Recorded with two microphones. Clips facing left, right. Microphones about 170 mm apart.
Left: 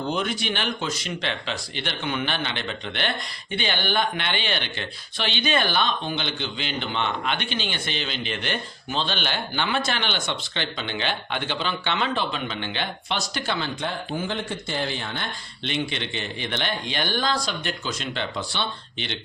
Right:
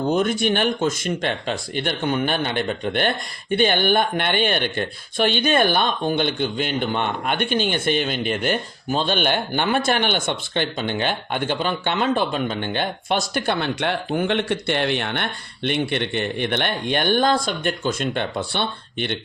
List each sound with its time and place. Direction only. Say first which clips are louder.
0.1 s speech: right 8 dB; 45° right (ahead or behind)